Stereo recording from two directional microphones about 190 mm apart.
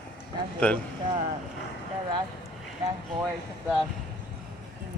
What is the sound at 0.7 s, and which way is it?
Speech, 5° left (ahead or behind).